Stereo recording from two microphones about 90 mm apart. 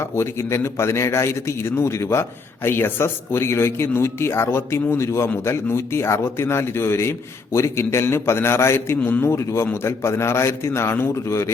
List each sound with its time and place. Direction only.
0.0 s a man's voice: 30° left (ahead or behind)